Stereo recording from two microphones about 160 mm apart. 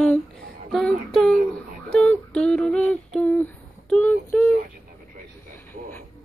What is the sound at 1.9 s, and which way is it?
Female singing, 5° left (ahead or behind).